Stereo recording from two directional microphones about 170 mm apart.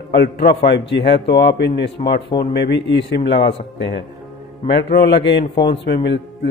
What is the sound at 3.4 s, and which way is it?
Speech, 35° left (ahead or behind).